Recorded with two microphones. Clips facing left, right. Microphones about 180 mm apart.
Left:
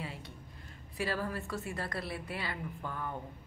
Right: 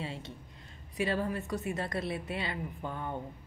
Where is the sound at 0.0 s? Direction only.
25° right (ahead or behind).